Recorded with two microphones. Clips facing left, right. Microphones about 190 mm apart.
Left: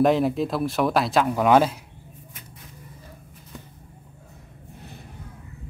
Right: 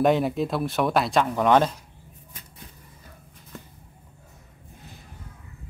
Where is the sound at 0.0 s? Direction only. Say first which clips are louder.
Left 2 dB; centre (ahead or behind).